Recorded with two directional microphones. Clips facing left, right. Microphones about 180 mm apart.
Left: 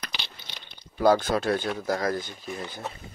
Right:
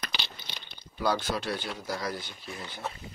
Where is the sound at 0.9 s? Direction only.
45° left (ahead or behind).